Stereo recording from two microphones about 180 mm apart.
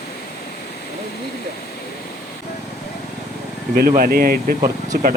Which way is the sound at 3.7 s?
55° right (ahead or behind).